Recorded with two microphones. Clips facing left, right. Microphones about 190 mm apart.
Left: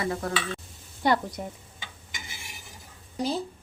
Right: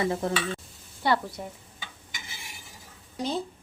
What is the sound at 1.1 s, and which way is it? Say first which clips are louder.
Speech: left 1 dB; 20° left (ahead or behind).